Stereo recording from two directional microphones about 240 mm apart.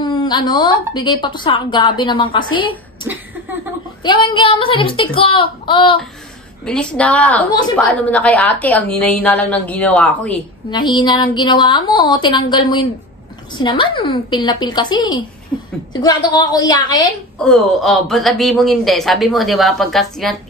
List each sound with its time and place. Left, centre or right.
0.0 s a woman's voice: centre
6.6 s speech: centre
10.7 s a woman's voice: centre
17.4 s speech: centre